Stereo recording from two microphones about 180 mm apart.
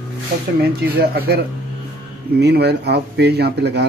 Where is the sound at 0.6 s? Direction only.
60° right (ahead or behind).